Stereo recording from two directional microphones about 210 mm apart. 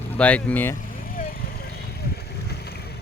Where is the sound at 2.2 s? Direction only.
50° left (ahead or behind).